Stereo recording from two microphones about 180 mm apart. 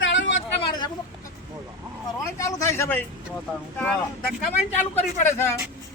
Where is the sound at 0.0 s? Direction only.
90° left.